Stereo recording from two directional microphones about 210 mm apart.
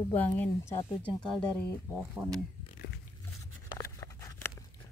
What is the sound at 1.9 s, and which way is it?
Speech, 5° right (ahead or behind).